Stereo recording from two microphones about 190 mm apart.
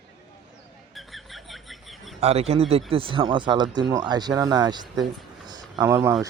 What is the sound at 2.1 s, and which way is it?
A man's voice, 35° right (ahead or behind).